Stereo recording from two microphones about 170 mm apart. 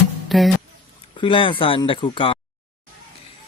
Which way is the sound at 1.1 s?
30° left (ahead or behind).